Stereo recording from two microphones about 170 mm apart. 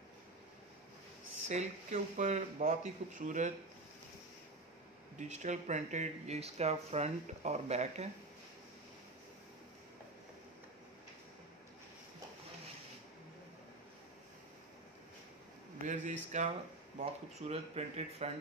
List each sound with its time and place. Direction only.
1.5 s speech: 40° right (ahead or behind)
5.3 s speech: 45° right (ahead or behind)
15.8 s speech: 45° right (ahead or behind)